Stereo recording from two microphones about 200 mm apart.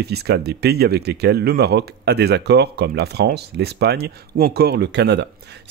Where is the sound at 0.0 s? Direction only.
55° right (ahead or behind).